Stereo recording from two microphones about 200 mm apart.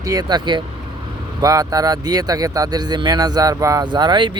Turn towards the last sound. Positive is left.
turn(degrees=-20)  # may be behind; listen again after turning